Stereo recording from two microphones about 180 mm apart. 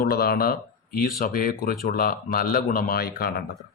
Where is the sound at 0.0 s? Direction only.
55° left (ahead or behind).